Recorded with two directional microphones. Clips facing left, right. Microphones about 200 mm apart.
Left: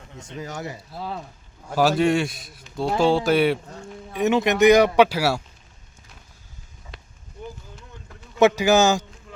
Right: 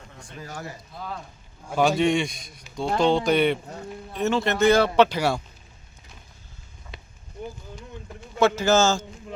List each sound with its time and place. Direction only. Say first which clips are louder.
0.2 s speech: left 5 dB; 20° left (ahead or behind)
1.6 s speech: left 2 dB; 5° left (ahead or behind)
6.9 s a sound: right 1 dB; centre (ahead or behind)
8.4 s speech: left 3 dB; 15° left (ahead or behind)